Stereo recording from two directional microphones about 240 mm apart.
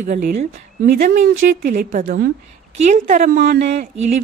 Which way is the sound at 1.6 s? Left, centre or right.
Right.